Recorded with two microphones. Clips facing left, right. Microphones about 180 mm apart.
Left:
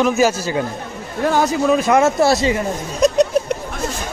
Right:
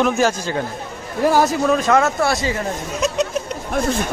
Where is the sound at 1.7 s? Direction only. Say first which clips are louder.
Left 2 dB; 10° left (ahead or behind).